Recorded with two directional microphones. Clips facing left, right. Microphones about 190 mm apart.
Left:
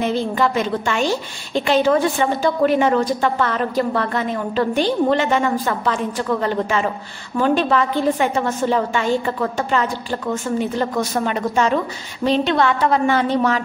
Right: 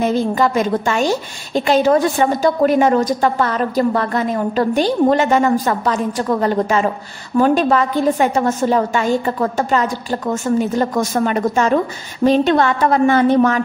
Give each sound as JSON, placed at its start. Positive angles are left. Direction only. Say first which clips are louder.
{"t": 0.0, "sound": "a woman's voice", "louder": "right 3 dB", "side_deg": -45}